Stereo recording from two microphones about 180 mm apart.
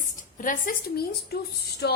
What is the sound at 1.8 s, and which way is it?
Music, 65° left (ahead or behind).